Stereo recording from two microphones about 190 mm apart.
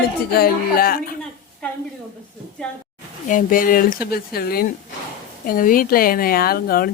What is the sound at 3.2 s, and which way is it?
Speech, 45° left (ahead or behind).